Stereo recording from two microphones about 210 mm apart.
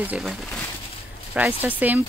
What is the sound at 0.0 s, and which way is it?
Speech, 5° right (ahead or behind).